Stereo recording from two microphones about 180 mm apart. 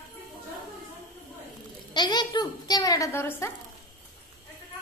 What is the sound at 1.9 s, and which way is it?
A child's voice, 25° left (ahead or behind).